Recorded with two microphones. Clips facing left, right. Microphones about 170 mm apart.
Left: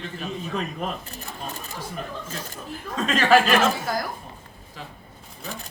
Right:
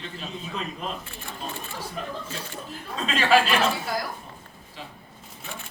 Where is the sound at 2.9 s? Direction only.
45° left (ahead or behind).